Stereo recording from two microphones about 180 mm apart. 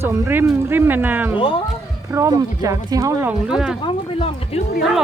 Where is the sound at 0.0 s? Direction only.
15° right (ahead or behind).